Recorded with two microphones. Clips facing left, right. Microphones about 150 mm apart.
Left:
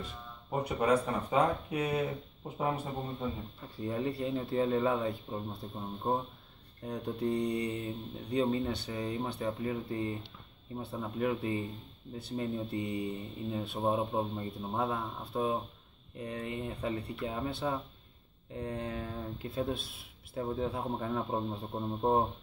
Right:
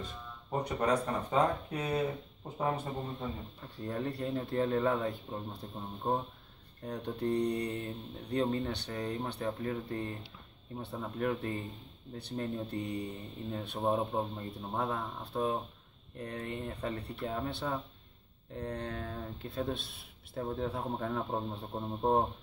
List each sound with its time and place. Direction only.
0.5 s speech: 10° left (ahead or behind)
3.7 s speech: centre (ahead or behind)